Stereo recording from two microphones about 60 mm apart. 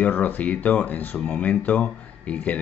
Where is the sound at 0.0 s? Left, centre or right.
Left.